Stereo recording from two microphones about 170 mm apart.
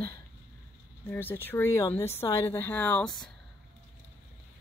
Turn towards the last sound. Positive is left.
turn(degrees=5)  # may be behind; listen again after turning